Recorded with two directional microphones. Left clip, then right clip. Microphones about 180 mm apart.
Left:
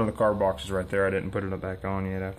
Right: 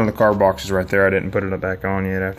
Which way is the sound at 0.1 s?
20° right (ahead or behind).